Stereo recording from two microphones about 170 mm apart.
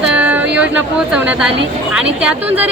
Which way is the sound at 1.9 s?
5° right (ahead or behind).